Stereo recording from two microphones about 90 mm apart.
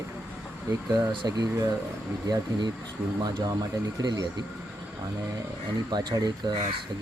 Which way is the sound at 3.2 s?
50° right (ahead or behind).